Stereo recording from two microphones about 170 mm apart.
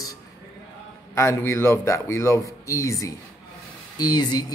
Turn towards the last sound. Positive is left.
turn(degrees=25)  # may be behind; listen again after turning